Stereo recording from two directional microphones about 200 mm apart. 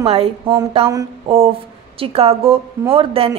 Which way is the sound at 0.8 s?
15° right (ahead or behind).